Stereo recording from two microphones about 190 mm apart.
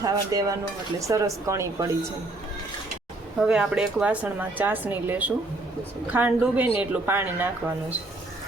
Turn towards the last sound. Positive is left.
turn(degrees=-10)  # may be behind; listen again after turning